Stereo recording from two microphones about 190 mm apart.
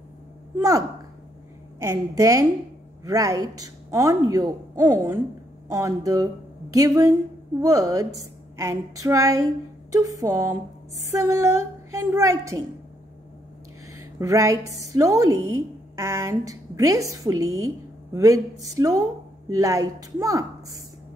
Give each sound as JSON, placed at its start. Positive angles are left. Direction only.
{"t": 0.6, "sound": "a woman's voice", "side_deg": -20}
{"t": 13.9, "sound": "speech", "side_deg": -15}